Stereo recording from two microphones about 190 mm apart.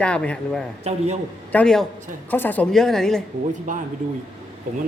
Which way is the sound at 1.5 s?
5° left (ahead or behind).